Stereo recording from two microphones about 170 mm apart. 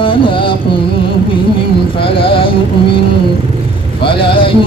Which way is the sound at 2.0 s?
30° left (ahead or behind).